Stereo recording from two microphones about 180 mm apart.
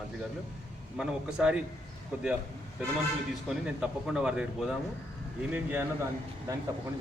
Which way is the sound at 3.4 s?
5° right (ahead or behind).